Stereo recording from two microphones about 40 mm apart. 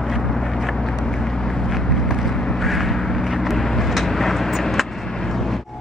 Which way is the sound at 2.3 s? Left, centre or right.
Centre.